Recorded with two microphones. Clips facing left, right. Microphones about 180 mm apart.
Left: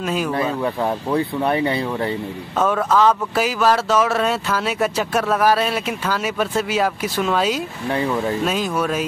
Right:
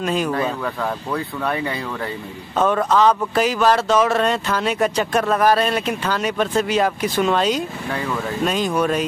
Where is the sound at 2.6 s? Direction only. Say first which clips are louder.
Right 1 dB; 5° left (ahead or behind).